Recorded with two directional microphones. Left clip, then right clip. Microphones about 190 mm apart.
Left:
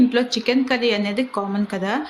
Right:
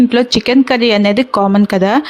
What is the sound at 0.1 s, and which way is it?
A woman's voice, 55° right (ahead or behind).